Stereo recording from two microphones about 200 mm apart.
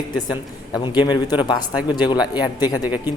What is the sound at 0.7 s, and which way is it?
Speech, 20° left (ahead or behind).